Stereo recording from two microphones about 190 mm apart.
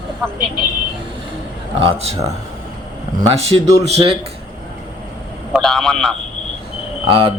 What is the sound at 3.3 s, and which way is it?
Speech, 35° right (ahead or behind).